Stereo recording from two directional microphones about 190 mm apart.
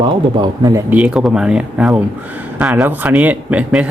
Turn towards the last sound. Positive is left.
turn(degrees=-5)  # may be behind; listen again after turning